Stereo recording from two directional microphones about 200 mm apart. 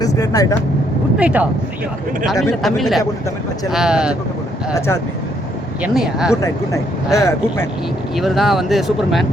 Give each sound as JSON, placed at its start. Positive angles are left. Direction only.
{"t": 0.0, "sound": "speech", "side_deg": 15}
{"t": 1.2, "sound": "speech", "side_deg": -5}
{"t": 5.8, "sound": "speech", "side_deg": -5}
{"t": 7.1, "sound": "speech", "side_deg": 15}
{"t": 8.1, "sound": "speech", "side_deg": 0}